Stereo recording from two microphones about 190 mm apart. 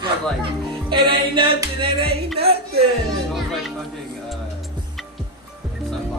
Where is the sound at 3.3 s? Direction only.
Centre (ahead or behind).